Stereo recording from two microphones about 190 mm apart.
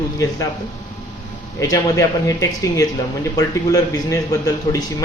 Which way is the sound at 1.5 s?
20° left (ahead or behind).